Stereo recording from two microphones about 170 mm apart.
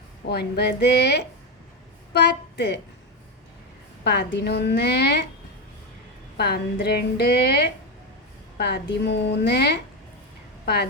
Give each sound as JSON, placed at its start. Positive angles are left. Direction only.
{"t": 0.3, "sound": "a woman's voice", "side_deg": 75}
{"t": 2.1, "sound": "a woman's voice", "side_deg": 90}
{"t": 4.0, "sound": "a woman's voice", "side_deg": 80}
{"t": 6.3, "sound": "a woman's voice", "side_deg": 70}